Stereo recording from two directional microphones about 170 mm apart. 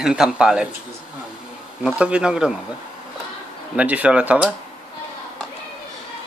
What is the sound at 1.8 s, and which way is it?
Speech, 5° right (ahead or behind).